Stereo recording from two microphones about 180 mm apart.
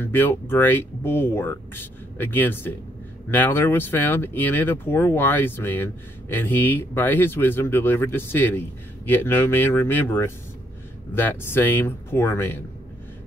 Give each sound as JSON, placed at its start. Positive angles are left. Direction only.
{"t": 0.0, "sound": "speech", "side_deg": 10}